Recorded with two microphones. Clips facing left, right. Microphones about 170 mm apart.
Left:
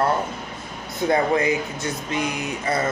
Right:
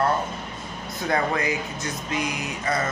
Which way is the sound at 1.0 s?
25° left (ahead or behind).